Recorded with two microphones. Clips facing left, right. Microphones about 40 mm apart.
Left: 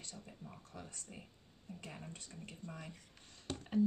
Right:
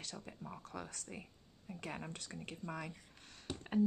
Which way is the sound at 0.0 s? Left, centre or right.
Right.